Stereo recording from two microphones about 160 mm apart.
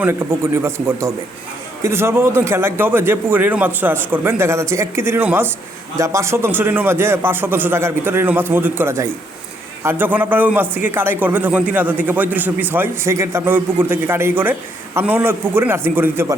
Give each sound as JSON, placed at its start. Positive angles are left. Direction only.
{"t": 0.0, "sound": "a man's voice", "side_deg": -15}